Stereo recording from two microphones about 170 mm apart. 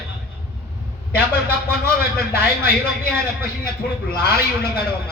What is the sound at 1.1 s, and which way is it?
A man's voice, 65° left (ahead or behind).